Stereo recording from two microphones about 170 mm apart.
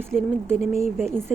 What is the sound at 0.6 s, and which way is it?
Speech, 40° left (ahead or behind).